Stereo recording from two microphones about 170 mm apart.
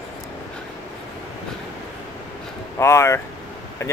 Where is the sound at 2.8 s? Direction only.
15° left (ahead or behind).